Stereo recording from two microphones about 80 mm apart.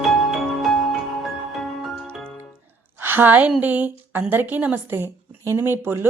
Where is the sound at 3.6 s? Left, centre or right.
Right.